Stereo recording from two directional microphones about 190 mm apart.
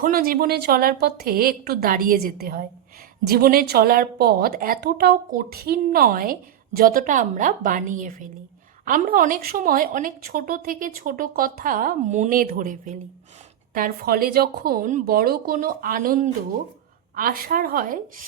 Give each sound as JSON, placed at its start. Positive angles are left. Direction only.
{"t": 0.0, "sound": "a woman's voice", "side_deg": -50}